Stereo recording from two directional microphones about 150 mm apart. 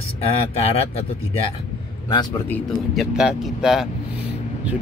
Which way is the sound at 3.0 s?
5° right (ahead or behind).